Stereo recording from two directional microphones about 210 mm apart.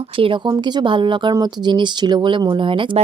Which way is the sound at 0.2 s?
25° right (ahead or behind).